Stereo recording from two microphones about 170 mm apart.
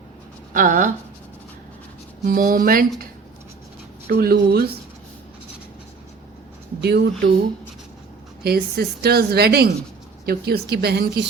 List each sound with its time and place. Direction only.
0.5 s speech: 50° right (ahead or behind)
2.2 s speech: 55° right (ahead or behind)
4.1 s speech: 65° right (ahead or behind)
6.8 s a woman's voice: 75° right (ahead or behind)
8.4 s a woman's voice: 65° right (ahead or behind)